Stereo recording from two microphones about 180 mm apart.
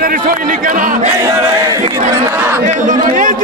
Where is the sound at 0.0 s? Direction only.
50° right (ahead or behind).